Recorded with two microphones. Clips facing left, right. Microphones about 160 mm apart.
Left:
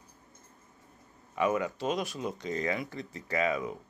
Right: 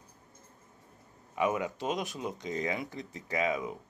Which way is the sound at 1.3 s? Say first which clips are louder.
Left 1 dB; 15° right (ahead or behind).